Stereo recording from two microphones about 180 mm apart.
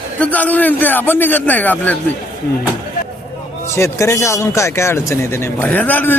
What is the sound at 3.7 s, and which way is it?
A man's voice, 15° left (ahead or behind).